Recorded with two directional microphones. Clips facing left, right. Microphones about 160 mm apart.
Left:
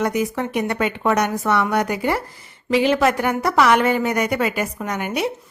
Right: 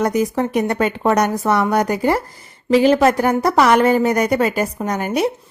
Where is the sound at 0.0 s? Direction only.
40° right (ahead or behind).